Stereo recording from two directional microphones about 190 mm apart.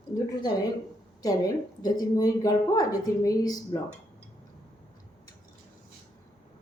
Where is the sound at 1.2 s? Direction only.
20° left (ahead or behind).